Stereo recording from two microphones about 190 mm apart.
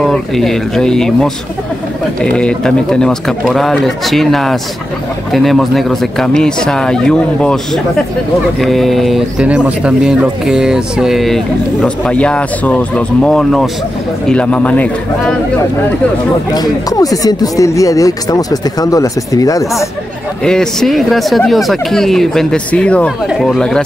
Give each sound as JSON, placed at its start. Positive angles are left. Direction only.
{"t": 0.0, "sound": "speech", "side_deg": 0}
{"t": 16.5, "sound": "speech", "side_deg": 20}
{"t": 20.4, "sound": "speech", "side_deg": 0}